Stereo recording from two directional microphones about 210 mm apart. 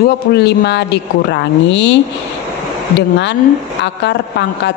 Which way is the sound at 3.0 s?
55° left (ahead or behind).